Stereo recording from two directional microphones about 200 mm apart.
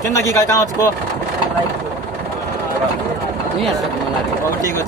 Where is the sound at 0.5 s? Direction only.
15° left (ahead or behind).